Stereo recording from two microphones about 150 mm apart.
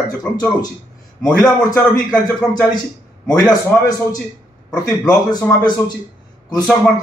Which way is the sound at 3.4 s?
25° left (ahead or behind).